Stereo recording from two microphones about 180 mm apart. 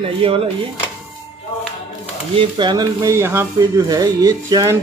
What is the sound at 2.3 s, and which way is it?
A man's voice, 25° right (ahead or behind).